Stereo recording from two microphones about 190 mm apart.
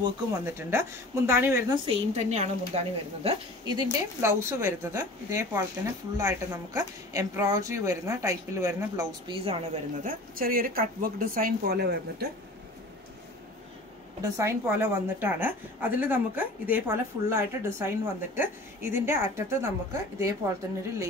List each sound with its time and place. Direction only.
0.0 s a woman's voice: 15° right (ahead or behind)
1.9 s a woman's voice: 35° right (ahead or behind)
3.6 s a woman's voice: 20° right (ahead or behind)
10.0 s a woman's voice: 50° right (ahead or behind)
14.2 s a woman's voice: 15° right (ahead or behind)